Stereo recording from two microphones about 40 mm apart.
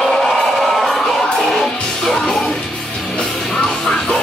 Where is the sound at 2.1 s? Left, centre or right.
Centre.